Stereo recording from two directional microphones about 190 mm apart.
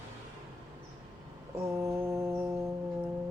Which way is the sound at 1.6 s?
15° right (ahead or behind).